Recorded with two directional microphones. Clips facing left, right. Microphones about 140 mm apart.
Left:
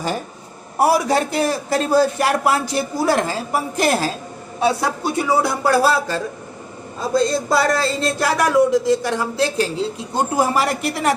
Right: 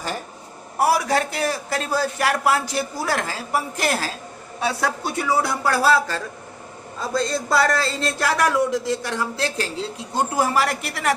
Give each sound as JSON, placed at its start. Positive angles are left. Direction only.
{"t": 0.8, "sound": "a man's voice", "side_deg": 20}